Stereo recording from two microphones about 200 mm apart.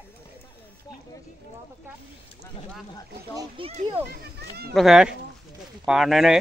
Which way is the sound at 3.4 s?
25° right (ahead or behind).